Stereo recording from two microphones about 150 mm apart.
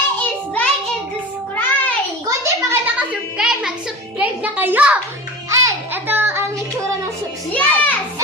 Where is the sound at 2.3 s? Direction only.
15° right (ahead or behind).